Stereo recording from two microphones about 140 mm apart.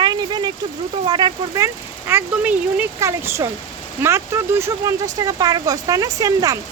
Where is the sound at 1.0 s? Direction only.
30° right (ahead or behind).